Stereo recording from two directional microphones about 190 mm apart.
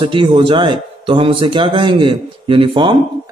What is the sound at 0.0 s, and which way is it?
Speech, 25° right (ahead or behind).